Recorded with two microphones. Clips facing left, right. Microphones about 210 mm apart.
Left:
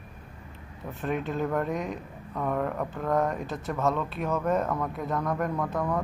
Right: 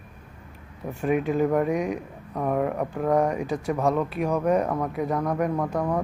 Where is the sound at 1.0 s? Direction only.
10° right (ahead or behind).